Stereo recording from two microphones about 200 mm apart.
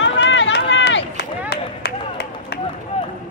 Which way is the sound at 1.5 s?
50° left (ahead or behind).